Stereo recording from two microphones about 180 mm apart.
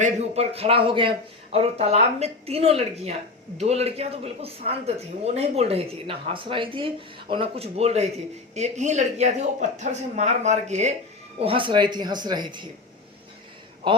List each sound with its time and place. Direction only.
0.0 s a woman's voice: 35° right (ahead or behind)
13.8 s a man's voice: 25° right (ahead or behind)